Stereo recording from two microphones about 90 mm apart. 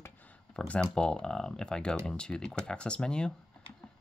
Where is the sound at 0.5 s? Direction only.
10° left (ahead or behind).